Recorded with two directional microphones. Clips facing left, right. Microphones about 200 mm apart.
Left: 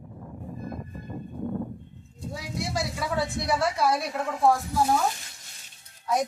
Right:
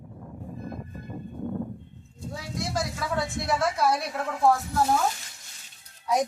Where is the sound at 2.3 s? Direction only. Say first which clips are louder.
Even; centre (ahead or behind).